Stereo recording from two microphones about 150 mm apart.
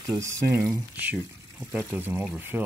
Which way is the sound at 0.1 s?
20° right (ahead or behind).